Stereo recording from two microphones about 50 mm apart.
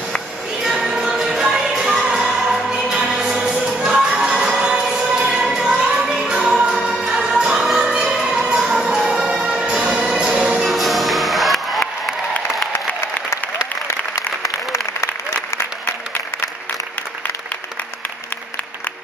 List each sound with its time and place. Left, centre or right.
0.7 s music: centre
10.6 s music: centre
14.4 s applause: left